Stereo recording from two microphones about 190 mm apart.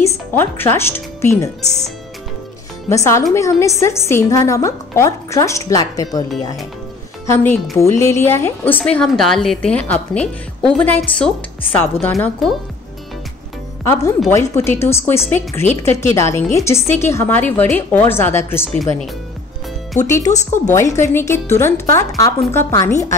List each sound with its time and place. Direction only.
0.0 s speech: 10° left (ahead or behind)
2.9 s a woman's voice: 15° left (ahead or behind)
13.8 s a woman's voice: 15° left (ahead or behind)
20.2 s speech: 40° left (ahead or behind)
20.7 s a woman's voice: 15° left (ahead or behind)